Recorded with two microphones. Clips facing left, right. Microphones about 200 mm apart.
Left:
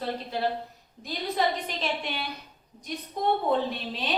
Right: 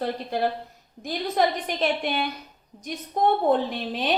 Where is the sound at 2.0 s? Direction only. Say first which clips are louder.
Right 7 dB; 50° right (ahead or behind).